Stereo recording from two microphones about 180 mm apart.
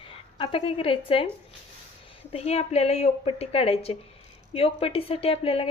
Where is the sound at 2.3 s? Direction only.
35° left (ahead or behind).